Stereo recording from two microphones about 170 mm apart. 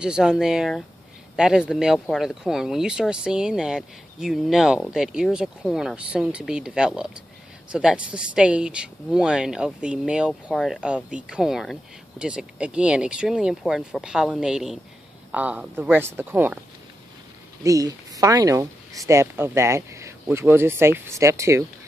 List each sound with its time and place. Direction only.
0.0 s speech: 5° right (ahead or behind)
17.6 s speech: 20° right (ahead or behind)